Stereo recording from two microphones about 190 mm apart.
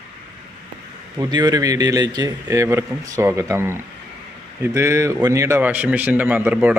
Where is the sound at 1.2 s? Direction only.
20° right (ahead or behind).